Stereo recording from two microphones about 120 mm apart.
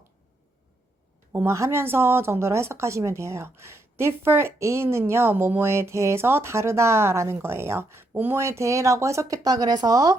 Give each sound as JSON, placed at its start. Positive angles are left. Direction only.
{"t": 1.3, "sound": "speech", "side_deg": -25}